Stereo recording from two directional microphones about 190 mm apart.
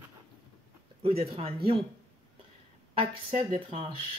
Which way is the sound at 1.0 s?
30° right (ahead or behind).